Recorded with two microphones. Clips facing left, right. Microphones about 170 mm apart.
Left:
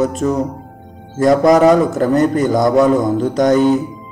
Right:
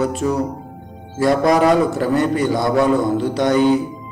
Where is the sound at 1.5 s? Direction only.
45° left (ahead or behind).